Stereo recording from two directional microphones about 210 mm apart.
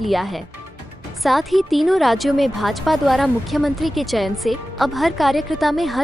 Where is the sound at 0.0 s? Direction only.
Centre (ahead or behind).